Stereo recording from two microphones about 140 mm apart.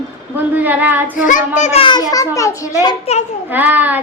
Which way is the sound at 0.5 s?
10° right (ahead or behind).